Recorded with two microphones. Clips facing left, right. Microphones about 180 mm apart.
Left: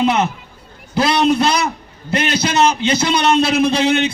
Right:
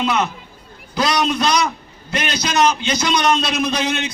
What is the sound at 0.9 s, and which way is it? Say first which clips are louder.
A man's voice: left 4 dB; 25° left (ahead or behind).